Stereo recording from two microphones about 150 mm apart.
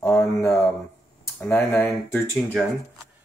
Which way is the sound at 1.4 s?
10° left (ahead or behind).